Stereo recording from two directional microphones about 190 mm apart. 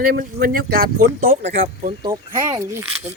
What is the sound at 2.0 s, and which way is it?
Speech, 20° right (ahead or behind).